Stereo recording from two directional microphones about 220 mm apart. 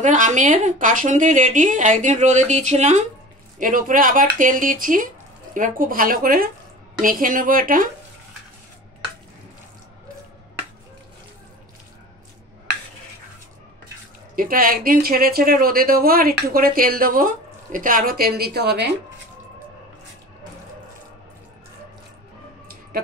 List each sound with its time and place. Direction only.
0.0 s a woman's voice: 35° right (ahead or behind)
14.3 s a woman's voice: 40° right (ahead or behind)